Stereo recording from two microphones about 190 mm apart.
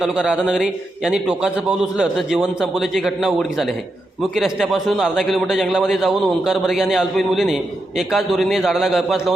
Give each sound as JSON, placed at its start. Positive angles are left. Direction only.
{"t": 0.0, "sound": "a man's voice", "side_deg": -5}